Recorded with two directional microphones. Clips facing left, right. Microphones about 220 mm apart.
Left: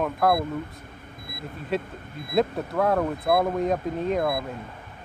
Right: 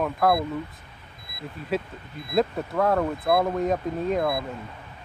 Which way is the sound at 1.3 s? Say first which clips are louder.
Left 3 dB; 50° left (ahead or behind).